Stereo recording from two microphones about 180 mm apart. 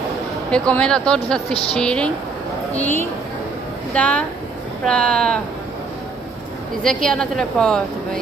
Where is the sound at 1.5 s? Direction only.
35° left (ahead or behind).